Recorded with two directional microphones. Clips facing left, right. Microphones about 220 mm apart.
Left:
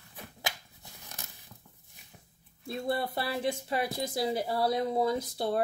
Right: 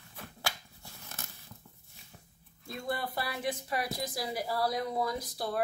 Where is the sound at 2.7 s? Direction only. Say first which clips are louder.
Left 4 dB; 25° left (ahead or behind).